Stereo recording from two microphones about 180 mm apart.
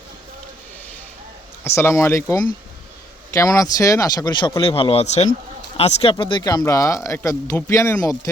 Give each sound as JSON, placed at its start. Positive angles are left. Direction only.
{"t": 1.6, "sound": "speech", "side_deg": 15}
{"t": 3.3, "sound": "speech", "side_deg": 20}